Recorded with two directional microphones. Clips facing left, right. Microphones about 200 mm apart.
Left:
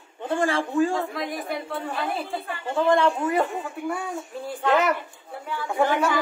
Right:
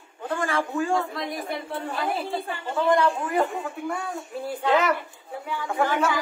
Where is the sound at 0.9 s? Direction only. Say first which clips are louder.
Right 1 dB; centre (ahead or behind).